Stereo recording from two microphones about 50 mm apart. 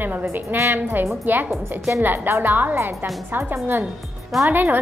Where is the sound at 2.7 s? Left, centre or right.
Right.